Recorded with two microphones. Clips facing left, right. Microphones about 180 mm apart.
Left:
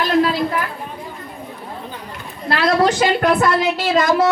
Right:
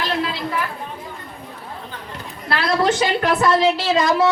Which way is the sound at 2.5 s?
45° left (ahead or behind).